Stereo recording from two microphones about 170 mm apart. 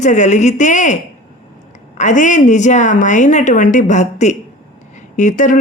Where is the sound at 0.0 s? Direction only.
45° left (ahead or behind).